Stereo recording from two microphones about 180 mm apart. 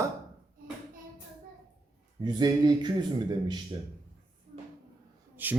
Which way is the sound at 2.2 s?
25° right (ahead or behind).